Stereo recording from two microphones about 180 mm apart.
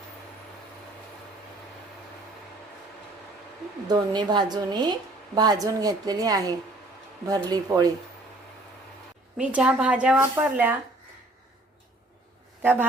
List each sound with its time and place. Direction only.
3.8 s a woman's voice: 25° right (ahead or behind)
9.4 s a woman's voice: 5° right (ahead or behind)